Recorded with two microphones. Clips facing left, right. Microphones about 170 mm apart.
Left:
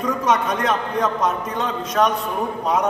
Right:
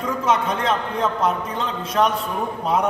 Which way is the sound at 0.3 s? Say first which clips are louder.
Even; 25° right (ahead or behind).